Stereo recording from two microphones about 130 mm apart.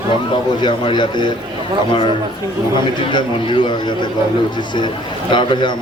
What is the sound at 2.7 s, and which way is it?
A man's voice, 35° left (ahead or behind).